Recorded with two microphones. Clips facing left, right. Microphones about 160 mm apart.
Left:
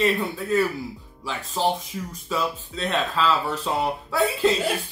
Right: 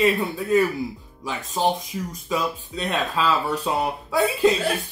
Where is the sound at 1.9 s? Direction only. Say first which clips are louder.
Right 1 dB; 5° right (ahead or behind).